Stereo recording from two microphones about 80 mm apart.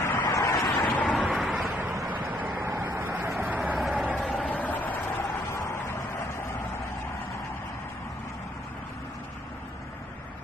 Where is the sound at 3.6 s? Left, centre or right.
Centre.